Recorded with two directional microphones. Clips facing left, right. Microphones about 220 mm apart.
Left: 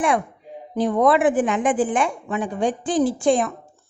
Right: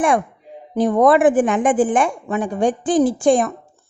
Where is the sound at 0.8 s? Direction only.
45° right (ahead or behind).